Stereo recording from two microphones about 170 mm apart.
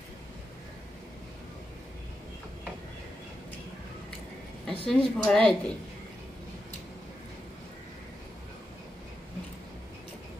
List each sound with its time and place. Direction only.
4.6 s a woman's voice: 5° left (ahead or behind)